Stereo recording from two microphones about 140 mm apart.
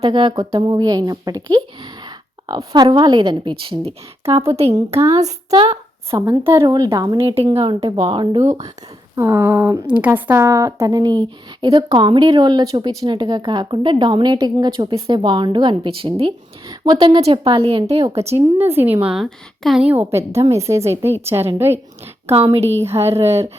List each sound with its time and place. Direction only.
0.0 s speech: 35° right (ahead or behind)
3.6 s a woman's voice: 45° right (ahead or behind)
6.1 s a woman's voice: 25° right (ahead or behind)
7.2 s a woman's voice: 45° right (ahead or behind)
9.1 s a woman's voice: 20° right (ahead or behind)
17.2 s a woman's voice: 45° right (ahead or behind)
18.3 s a woman's voice: 15° right (ahead or behind)
22.3 s a woman's voice: 40° right (ahead or behind)